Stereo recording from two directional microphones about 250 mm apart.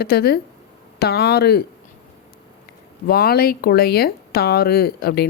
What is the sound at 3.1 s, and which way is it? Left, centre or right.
Speech, left.